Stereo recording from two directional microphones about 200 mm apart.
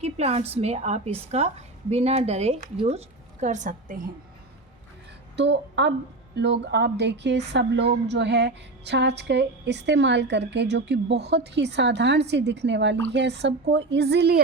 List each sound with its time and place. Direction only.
0.0 s a woman's voice: 30° right (ahead or behind)
5.4 s a woman's voice: 60° right (ahead or behind)